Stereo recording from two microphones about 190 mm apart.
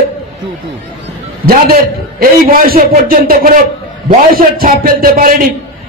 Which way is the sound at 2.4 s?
50° right (ahead or behind).